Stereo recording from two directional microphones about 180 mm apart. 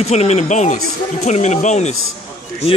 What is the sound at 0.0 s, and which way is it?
Speech, 35° left (ahead or behind).